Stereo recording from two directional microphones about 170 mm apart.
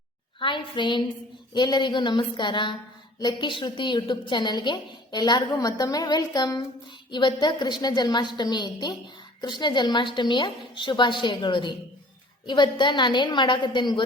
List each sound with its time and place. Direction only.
0.3 s a woman's voice: 30° left (ahead or behind)